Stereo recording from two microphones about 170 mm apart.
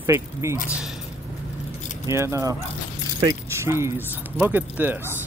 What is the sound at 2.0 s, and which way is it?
Speech, 15° right (ahead or behind).